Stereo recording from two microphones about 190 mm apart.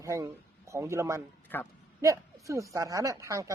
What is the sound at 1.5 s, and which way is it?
Speech, 10° left (ahead or behind).